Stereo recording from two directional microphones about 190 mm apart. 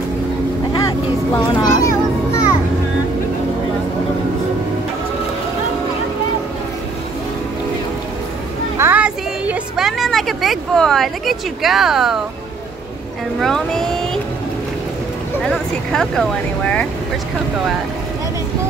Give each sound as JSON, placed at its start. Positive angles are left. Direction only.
{"t": 0.7, "sound": "children playing", "side_deg": 20}
{"t": 8.7, "sound": "a sound", "side_deg": -10}
{"t": 13.4, "sound": "speech", "side_deg": 0}
{"t": 15.4, "sound": "speech", "side_deg": 0}